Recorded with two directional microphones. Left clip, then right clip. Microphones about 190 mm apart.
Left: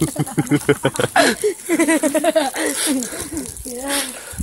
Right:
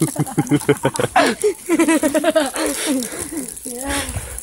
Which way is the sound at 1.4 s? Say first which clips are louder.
Right 1 dB; 50° right (ahead or behind).